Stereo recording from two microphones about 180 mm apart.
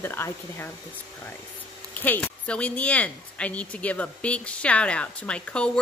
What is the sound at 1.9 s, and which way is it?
A woman's voice, 10° left (ahead or behind).